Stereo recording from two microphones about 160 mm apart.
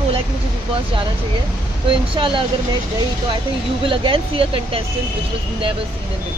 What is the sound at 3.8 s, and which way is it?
Speech, 30° right (ahead or behind).